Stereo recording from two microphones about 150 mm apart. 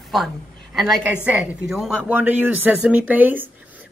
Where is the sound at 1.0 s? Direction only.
10° right (ahead or behind).